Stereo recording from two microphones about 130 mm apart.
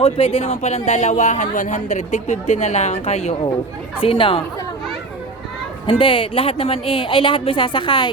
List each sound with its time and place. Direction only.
0.0 s speech: 50° left (ahead or behind)
4.0 s speech: 45° left (ahead or behind)
5.8 s speech: 40° left (ahead or behind)